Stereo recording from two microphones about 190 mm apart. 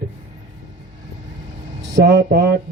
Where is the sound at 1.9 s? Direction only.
60° right (ahead or behind).